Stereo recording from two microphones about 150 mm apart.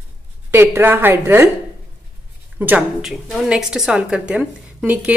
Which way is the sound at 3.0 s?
Centre (ahead or behind).